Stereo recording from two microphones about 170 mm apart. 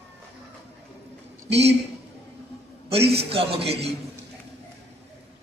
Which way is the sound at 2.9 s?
35° right (ahead or behind).